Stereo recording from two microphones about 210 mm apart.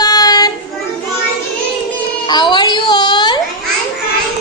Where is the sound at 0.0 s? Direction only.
20° left (ahead or behind).